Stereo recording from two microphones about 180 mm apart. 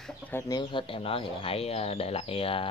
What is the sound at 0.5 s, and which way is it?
Speech, 25° left (ahead or behind).